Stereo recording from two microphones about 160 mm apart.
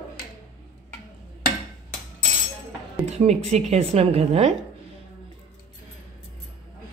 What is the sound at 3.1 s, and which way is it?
Speech, 40° right (ahead or behind).